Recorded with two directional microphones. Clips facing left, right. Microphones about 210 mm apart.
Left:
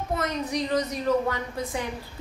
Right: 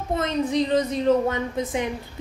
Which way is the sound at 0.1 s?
25° right (ahead or behind).